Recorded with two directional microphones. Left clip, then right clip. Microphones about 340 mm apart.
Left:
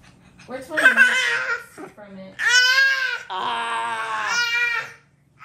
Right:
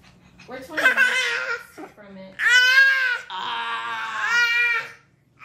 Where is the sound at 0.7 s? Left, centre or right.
Left.